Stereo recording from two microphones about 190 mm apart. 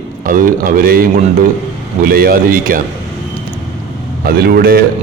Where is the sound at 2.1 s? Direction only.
50° right (ahead or behind).